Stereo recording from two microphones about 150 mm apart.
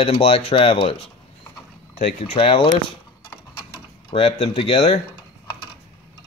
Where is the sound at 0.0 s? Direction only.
40° left (ahead or behind).